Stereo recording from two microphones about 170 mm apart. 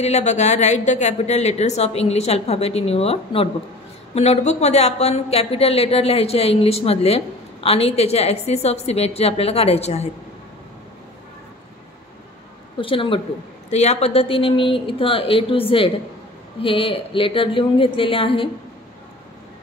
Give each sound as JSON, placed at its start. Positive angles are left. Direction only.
{"t": 0.0, "sound": "a woman's voice", "side_deg": 40}
{"t": 12.7, "sound": "a woman's voice", "side_deg": 30}